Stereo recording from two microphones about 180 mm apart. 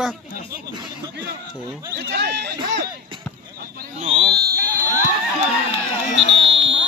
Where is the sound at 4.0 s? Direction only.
30° right (ahead or behind).